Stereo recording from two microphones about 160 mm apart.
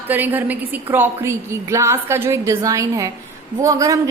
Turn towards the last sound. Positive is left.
turn(degrees=-20)  # may be behind; listen again after turning